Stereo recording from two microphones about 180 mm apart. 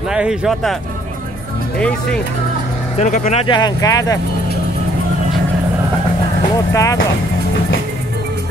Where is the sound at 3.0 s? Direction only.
40° left (ahead or behind).